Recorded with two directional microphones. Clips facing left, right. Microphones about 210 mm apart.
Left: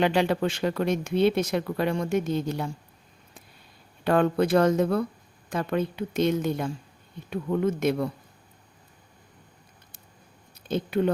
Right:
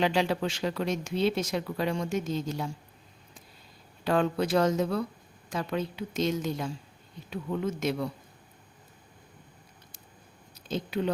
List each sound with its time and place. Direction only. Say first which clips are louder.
0.0 s speech: left 4 dB; 60° left (ahead or behind)
4.0 s speech: left 4 dB; 55° left (ahead or behind)
10.7 s speech: left 5 dB; 55° left (ahead or behind)